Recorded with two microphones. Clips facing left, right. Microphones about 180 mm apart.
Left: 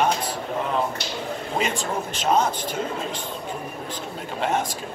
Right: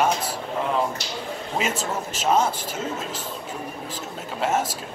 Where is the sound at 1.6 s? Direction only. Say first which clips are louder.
Even; 5° right (ahead or behind).